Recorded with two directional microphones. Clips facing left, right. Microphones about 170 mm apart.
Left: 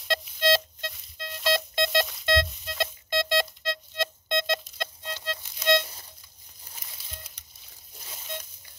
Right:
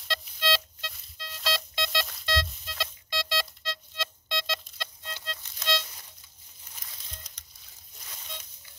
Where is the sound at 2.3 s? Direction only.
50° left (ahead or behind).